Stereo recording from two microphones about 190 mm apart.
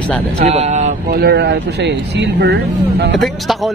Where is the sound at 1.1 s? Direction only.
60° right (ahead or behind).